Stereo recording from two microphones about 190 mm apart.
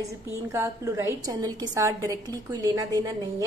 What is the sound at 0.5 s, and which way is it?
A woman's voice, 15° right (ahead or behind).